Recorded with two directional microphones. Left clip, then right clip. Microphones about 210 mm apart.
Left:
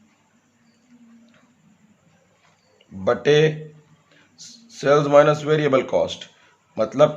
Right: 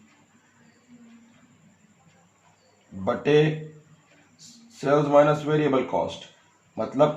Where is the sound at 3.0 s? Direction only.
45° left (ahead or behind).